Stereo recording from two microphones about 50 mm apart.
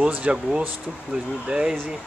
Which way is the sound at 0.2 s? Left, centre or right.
Right.